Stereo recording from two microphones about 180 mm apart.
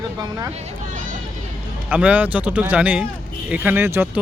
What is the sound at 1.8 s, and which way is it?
A man's voice, 10° right (ahead or behind).